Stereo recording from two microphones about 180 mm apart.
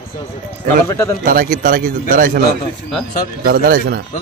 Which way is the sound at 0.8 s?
15° left (ahead or behind).